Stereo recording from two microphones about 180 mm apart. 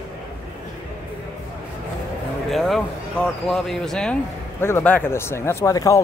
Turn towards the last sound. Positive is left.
turn(degrees=15)  # may be behind; listen again after turning